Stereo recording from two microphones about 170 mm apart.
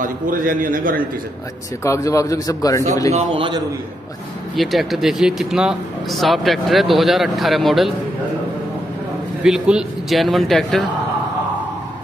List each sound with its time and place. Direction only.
0.0 s a man's voice: 55° right (ahead or behind)
1.8 s speech: 20° left (ahead or behind)
3.1 s a man's voice: 35° right (ahead or behind)
4.6 s speech: centre (ahead or behind)
9.4 s speech: 5° right (ahead or behind)